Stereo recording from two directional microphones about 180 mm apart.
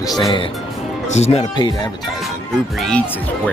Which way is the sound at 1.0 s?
40° left (ahead or behind).